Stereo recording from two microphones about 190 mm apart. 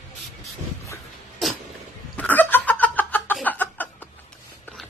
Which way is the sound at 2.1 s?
10° left (ahead or behind).